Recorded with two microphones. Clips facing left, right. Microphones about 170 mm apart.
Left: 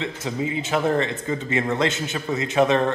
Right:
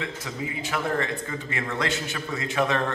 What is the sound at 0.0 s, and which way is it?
A man's voice, 25° left (ahead or behind).